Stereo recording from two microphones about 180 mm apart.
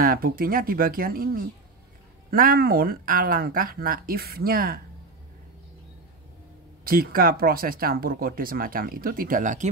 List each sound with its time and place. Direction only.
0.0 s speech: 55° right (ahead or behind)
6.8 s speech: 55° right (ahead or behind)